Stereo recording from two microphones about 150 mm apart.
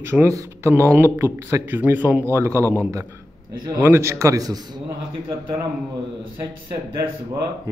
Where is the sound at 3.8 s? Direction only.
15° right (ahead or behind).